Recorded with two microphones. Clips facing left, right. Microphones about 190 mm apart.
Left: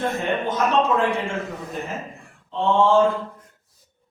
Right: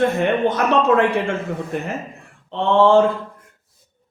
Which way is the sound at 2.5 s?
70° right (ahead or behind).